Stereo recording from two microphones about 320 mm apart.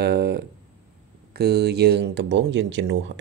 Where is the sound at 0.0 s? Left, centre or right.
Right.